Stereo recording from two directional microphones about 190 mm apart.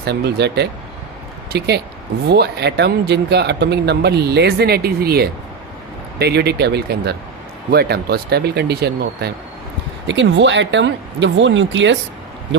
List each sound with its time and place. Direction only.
0.0 s speech: 60° right (ahead or behind)
10.1 s speech: 70° right (ahead or behind)